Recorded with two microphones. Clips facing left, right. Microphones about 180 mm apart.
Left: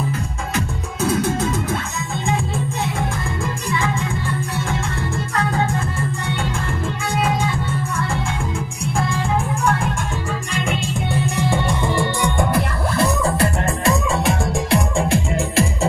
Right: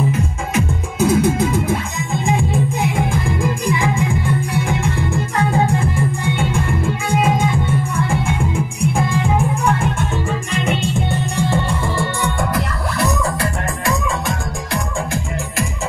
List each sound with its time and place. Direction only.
0.9 s music: 10° right (ahead or behind)
6.5 s music: 10° right (ahead or behind)
10.5 s music: centre (ahead or behind)
11.5 s music: 15° left (ahead or behind)